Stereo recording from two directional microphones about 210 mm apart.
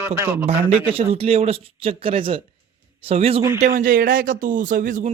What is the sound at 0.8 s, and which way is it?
Speech, 25° right (ahead or behind).